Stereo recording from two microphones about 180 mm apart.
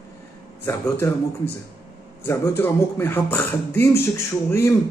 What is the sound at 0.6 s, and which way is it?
Speech, 15° left (ahead or behind).